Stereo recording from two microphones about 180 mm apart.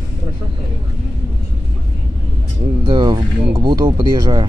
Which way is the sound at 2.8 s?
25° right (ahead or behind).